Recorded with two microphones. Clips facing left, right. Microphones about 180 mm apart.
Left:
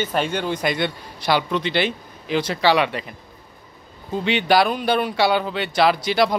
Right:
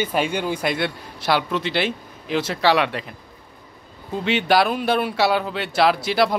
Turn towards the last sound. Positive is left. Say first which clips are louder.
# even
turn(degrees=0)  # may be behind; listen again after turning